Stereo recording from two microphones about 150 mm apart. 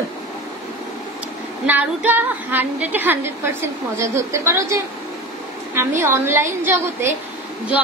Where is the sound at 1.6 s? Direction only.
10° right (ahead or behind).